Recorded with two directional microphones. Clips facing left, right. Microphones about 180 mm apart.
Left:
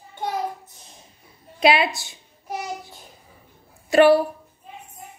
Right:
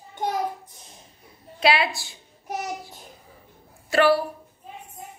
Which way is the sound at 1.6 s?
20° left (ahead or behind).